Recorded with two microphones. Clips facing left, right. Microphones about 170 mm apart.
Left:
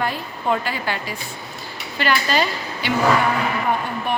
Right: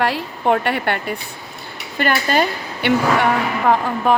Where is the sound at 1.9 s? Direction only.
50° right (ahead or behind); by 3.9 s 90° right.